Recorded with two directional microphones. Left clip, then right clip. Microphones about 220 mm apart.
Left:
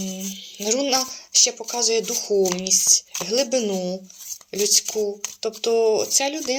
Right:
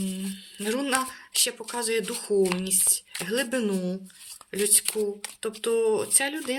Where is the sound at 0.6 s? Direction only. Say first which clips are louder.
Left 5 dB; 20° right (ahead or behind).